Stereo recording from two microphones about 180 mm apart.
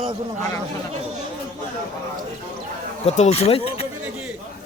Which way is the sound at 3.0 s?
35° left (ahead or behind).